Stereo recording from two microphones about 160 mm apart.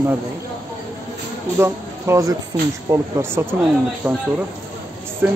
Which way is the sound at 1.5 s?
15° right (ahead or behind).